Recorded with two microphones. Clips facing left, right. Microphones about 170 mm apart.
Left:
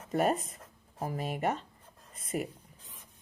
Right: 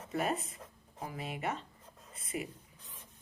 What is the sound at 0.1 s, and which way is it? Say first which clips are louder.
Speech: left 6 dB; 40° left (ahead or behind).